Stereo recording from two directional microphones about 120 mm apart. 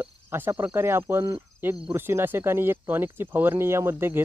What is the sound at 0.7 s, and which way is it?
Speech, 20° right (ahead or behind).